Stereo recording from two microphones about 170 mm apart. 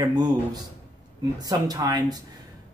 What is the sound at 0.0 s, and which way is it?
Speech, 25° right (ahead or behind).